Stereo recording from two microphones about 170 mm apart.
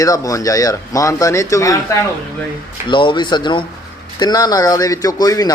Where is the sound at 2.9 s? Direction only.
30° left (ahead or behind).